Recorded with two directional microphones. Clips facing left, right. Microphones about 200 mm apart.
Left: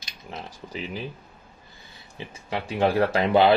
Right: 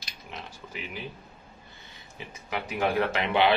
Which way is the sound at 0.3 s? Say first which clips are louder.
Left 5 dB; 40° left (ahead or behind).